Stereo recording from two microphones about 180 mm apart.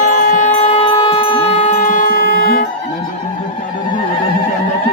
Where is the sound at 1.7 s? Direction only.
45° left (ahead or behind).